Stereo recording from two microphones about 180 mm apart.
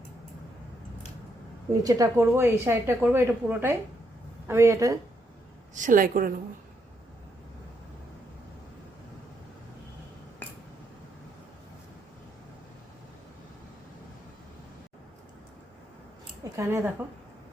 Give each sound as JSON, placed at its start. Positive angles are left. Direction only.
{"t": 1.8, "sound": "speech", "side_deg": -20}
{"t": 5.7, "sound": "a woman's voice", "side_deg": -45}
{"t": 16.4, "sound": "speech", "side_deg": -15}